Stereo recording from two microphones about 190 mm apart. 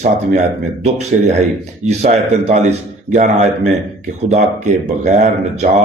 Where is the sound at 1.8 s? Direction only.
35° right (ahead or behind).